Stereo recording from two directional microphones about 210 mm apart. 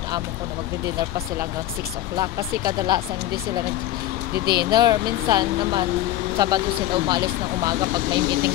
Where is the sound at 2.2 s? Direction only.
15° right (ahead or behind).